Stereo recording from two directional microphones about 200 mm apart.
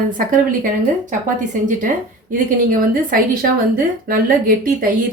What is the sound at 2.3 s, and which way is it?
Speech, 45° right (ahead or behind).